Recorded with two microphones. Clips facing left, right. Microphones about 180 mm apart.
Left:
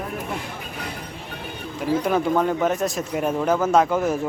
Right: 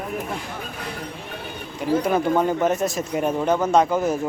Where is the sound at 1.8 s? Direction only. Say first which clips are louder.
Right 1 dB; centre (ahead or behind).